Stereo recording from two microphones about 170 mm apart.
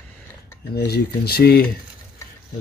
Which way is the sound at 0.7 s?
70° left (ahead or behind).